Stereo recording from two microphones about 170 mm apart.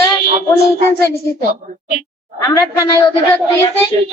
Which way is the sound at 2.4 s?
20° left (ahead or behind).